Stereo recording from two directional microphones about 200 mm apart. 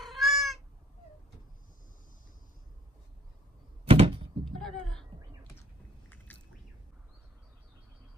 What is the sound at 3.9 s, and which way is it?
Door, 25° right (ahead or behind).